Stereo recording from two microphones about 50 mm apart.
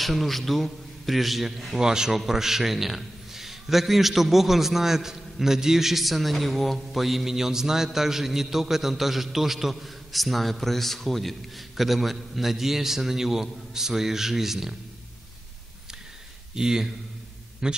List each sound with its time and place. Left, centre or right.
0.0 s a man's voice: centre
1.8 s a man's voice: centre
16.5 s speech: centre